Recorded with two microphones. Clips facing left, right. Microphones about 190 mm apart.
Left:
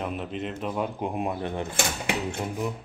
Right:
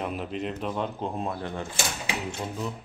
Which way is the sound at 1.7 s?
60° left (ahead or behind).